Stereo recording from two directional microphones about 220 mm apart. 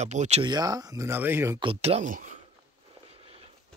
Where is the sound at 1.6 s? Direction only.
25° right (ahead or behind).